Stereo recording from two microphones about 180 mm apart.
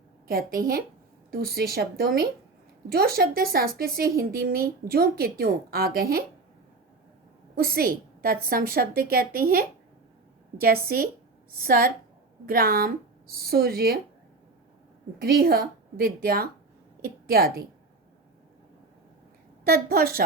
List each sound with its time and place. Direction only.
0.3 s speech: 55° right (ahead or behind)
7.5 s speech: 60° right (ahead or behind)
15.2 s a woman's voice: 60° right (ahead or behind)
19.6 s speech: 55° right (ahead or behind)